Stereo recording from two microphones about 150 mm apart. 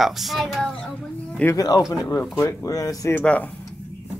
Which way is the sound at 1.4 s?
20° left (ahead or behind).